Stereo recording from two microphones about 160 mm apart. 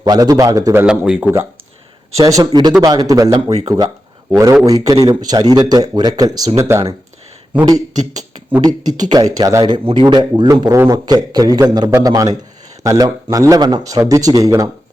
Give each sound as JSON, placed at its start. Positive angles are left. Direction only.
{"t": 0.0, "sound": "a man's voice", "side_deg": -25}
{"t": 2.1, "sound": "a man's voice", "side_deg": -20}
{"t": 8.1, "sound": "a man's voice", "side_deg": -25}